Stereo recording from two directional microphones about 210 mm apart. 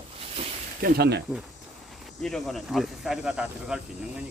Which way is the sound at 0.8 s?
45° right (ahead or behind).